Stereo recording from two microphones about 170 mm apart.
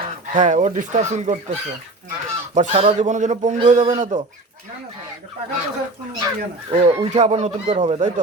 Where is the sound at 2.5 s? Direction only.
40° right (ahead or behind).